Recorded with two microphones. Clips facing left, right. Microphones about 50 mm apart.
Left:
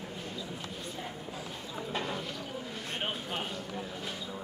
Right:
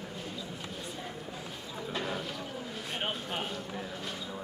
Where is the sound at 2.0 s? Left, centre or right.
Centre.